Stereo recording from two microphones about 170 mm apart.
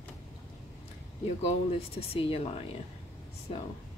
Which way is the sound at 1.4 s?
35° left (ahead or behind).